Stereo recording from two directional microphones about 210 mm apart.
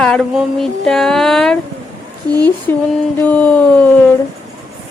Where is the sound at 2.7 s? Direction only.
10° left (ahead or behind).